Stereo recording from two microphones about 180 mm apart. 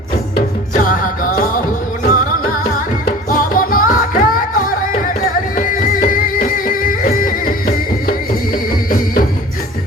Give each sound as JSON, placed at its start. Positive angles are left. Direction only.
{"t": 0.3, "sound": "music", "side_deg": 50}
{"t": 5.5, "sound": "music", "side_deg": 50}